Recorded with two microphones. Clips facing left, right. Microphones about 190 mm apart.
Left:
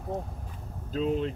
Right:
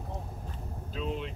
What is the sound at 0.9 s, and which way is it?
Speech, 40° left (ahead or behind).